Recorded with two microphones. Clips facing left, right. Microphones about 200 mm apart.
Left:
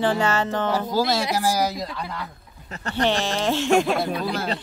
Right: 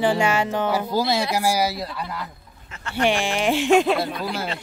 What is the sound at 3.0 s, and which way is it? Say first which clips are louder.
A woman's voice: right 1 dB; 15° right (ahead or behind).